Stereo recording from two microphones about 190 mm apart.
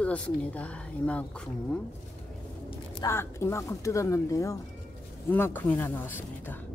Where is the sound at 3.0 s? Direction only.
15° left (ahead or behind).